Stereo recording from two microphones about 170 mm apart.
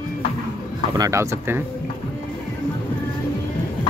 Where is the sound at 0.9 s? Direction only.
20° right (ahead or behind).